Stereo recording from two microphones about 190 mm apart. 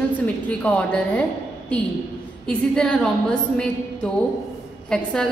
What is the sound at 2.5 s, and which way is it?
A woman's voice, 5° left (ahead or behind).